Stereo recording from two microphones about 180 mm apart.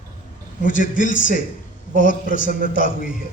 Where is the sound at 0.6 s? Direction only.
45° left (ahead or behind).